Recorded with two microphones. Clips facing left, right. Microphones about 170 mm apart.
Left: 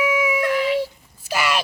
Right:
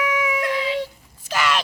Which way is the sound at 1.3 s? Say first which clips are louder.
Even; 10° left (ahead or behind).